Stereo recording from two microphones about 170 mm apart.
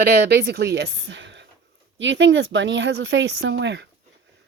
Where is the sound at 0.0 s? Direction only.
70° right (ahead or behind); by 3.8 s 90° right.